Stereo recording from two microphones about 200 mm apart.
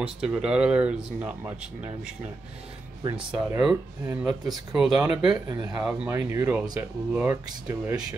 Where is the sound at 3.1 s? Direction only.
5° right (ahead or behind).